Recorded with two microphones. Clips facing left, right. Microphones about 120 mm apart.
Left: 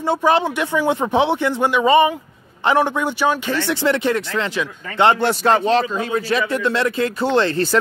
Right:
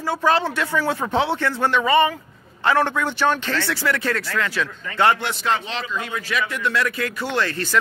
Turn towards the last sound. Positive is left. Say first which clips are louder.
# left 7 dB
turn(degrees=30)  # may be behind; listen again after turning